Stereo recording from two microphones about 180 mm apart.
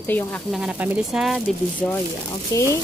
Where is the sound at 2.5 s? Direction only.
15° left (ahead or behind).